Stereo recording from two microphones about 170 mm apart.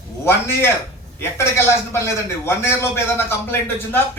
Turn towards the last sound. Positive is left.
turn(degrees=15)  # may be behind; listen again after turning